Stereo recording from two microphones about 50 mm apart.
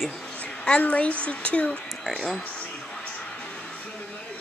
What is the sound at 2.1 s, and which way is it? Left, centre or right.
Speech, centre.